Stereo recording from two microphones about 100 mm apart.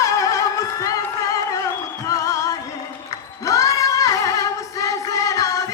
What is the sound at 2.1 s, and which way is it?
Music, 35° left (ahead or behind).